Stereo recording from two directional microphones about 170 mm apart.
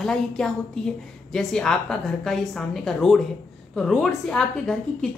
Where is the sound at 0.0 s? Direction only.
5° left (ahead or behind).